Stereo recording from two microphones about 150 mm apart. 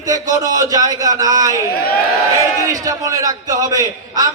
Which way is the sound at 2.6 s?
25° right (ahead or behind).